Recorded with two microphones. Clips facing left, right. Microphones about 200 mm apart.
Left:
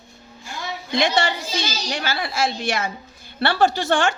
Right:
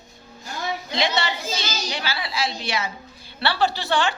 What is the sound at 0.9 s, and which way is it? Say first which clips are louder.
A woman's voice: left 5 dB; 50° left (ahead or behind).